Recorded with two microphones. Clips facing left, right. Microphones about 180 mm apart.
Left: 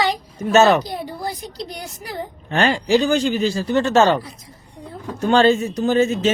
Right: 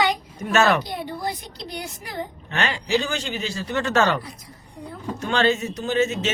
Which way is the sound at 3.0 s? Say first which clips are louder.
Left 10 dB; 35° left (ahead or behind).